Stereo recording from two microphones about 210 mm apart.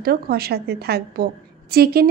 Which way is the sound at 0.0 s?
45° right (ahead or behind).